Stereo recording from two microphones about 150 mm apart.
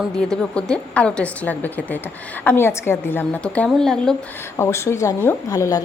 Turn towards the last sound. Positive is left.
turn(degrees=25)  # may be behind; listen again after turning